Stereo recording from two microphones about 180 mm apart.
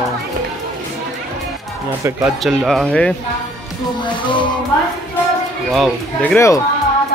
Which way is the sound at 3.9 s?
25° left (ahead or behind).